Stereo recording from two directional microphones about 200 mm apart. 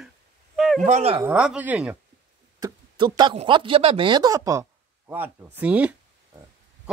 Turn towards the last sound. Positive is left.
turn(degrees=-5)  # may be behind; listen again after turning